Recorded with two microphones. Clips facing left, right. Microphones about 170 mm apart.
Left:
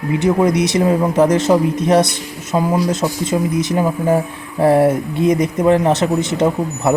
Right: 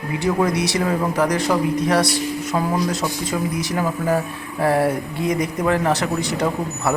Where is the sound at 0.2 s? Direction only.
20° left (ahead or behind).